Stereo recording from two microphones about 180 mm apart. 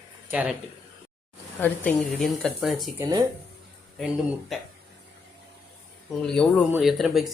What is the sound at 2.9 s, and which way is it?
Speech, 20° right (ahead or behind).